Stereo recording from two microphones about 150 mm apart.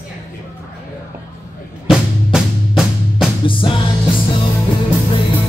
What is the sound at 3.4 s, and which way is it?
Music, 35° left (ahead or behind).